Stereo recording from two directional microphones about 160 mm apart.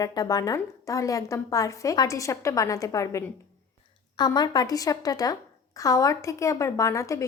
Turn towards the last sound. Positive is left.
turn(degrees=20)  # may be behind; listen again after turning